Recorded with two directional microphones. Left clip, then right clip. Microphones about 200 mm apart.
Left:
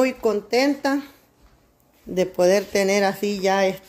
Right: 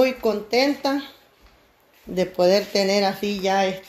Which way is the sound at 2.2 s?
20° left (ahead or behind).